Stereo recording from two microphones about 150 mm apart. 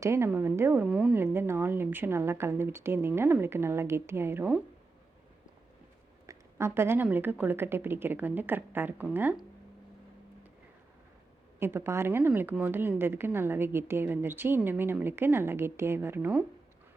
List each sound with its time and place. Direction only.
0.0 s a woman's voice: 15° right (ahead or behind)
1.1 s a woman's voice: 15° right (ahead or behind)
6.2 s a woman's voice: 15° right (ahead or behind)
11.6 s a woman's voice: 15° right (ahead or behind)